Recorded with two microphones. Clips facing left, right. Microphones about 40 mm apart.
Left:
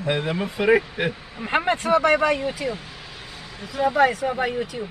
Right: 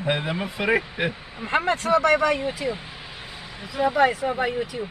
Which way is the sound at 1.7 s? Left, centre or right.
Centre.